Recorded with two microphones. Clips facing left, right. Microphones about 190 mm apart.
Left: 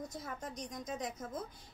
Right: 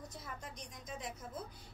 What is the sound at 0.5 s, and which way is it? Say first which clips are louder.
Speech: left 7 dB; 40° left (ahead or behind).